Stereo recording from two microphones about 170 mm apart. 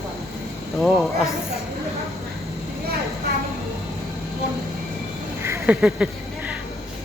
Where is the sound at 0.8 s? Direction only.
Centre (ahead or behind).